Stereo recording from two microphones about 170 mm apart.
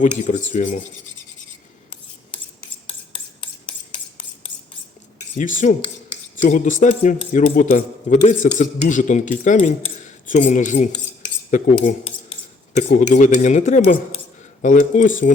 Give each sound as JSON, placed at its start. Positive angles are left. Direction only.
{"t": 0.0, "sound": "a man's voice", "side_deg": 45}
{"t": 2.3, "sound": "filing", "side_deg": 30}
{"t": 5.1, "sound": "a man's voice", "side_deg": 50}
{"t": 12.0, "sound": "a sound", "side_deg": 35}
{"t": 13.1, "sound": "a man's voice", "side_deg": 45}